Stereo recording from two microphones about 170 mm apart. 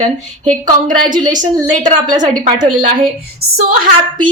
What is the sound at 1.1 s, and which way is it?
Speech, 50° right (ahead or behind).